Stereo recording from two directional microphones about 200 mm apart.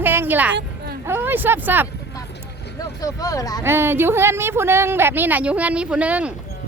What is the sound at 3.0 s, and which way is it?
Speech, 15° left (ahead or behind).